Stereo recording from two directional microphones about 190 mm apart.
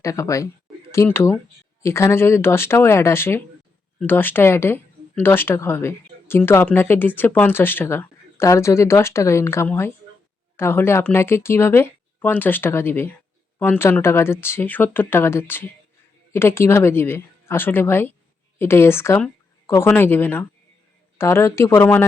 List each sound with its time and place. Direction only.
0.0 s speech: 15° left (ahead or behind)